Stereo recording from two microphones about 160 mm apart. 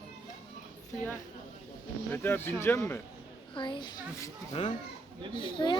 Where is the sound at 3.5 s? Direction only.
30° left (ahead or behind).